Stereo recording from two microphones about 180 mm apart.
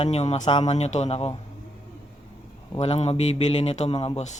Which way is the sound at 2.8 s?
35° left (ahead or behind).